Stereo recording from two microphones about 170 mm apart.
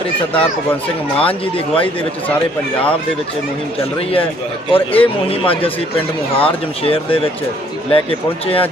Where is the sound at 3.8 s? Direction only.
35° left (ahead or behind).